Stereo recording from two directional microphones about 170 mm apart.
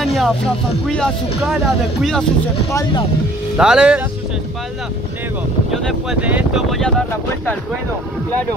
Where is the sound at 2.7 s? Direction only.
20° left (ahead or behind).